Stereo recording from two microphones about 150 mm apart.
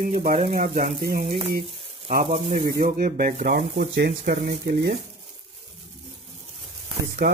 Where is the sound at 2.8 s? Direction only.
70° right (ahead or behind).